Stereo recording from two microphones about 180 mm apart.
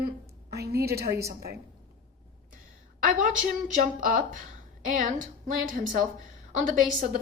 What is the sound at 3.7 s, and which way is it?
A woman's voice, 45° right (ahead or behind).